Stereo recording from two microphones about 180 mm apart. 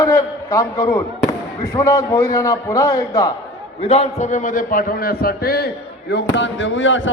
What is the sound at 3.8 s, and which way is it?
A man's voice, 35° left (ahead or behind).